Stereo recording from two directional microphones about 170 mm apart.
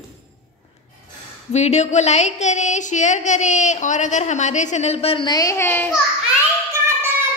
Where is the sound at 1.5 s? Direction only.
40° left (ahead or behind); by 5.9 s 15° left (ahead or behind).